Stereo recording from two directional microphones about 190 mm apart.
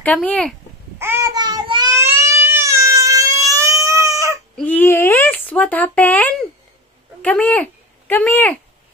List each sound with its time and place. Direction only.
0.0 s speech: 5° left (ahead or behind)
0.9 s baby cry: 15° right (ahead or behind)
4.6 s speech: 10° left (ahead or behind)